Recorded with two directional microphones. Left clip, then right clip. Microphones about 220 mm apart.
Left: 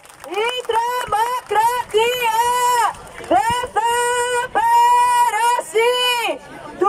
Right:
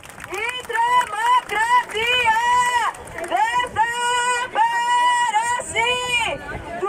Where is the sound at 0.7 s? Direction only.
60° left (ahead or behind).